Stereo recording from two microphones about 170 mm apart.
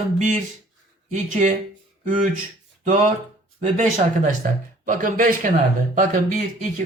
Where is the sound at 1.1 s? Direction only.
45° right (ahead or behind).